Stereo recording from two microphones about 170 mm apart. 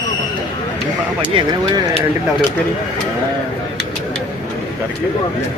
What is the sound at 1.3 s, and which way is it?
Speech, 30° right (ahead or behind).